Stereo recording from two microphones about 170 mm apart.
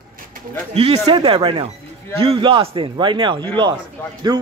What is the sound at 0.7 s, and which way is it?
A man's voice, 35° right (ahead or behind).